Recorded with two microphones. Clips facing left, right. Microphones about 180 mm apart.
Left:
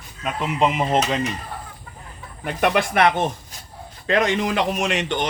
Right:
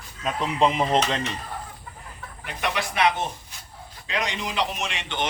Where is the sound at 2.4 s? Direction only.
50° left (ahead or behind).